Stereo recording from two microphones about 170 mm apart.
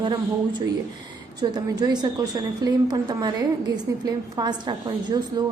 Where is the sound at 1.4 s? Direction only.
25° right (ahead or behind).